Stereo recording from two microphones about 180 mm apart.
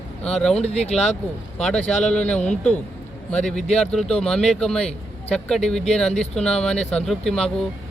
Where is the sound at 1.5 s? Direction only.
5° left (ahead or behind).